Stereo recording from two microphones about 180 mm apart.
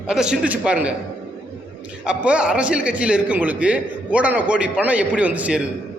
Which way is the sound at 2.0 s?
5° right (ahead or behind).